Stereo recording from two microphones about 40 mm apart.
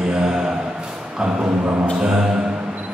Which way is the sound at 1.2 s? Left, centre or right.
Centre.